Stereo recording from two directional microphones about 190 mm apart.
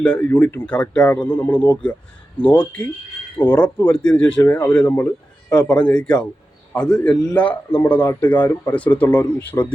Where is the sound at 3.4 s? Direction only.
10° left (ahead or behind).